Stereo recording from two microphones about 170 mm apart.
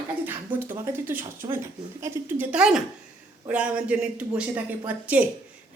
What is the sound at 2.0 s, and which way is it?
Speech, 15° right (ahead or behind).